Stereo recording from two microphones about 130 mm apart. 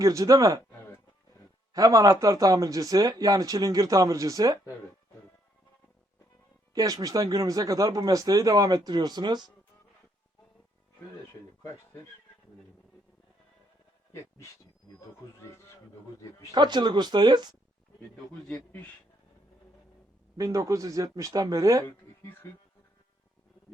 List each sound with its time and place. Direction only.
0.0 s speech: 25° right (ahead or behind)
1.7 s speech: 30° right (ahead or behind)
6.7 s speech: 30° right (ahead or behind)
11.6 s speech: 20° left (ahead or behind)
14.1 s a sound: 20° left (ahead or behind)
16.5 s speech: 35° right (ahead or behind)
18.4 s a man's voice: 10° left (ahead or behind)
20.3 s speech: 25° right (ahead or behind)
21.8 s a sound: 15° left (ahead or behind)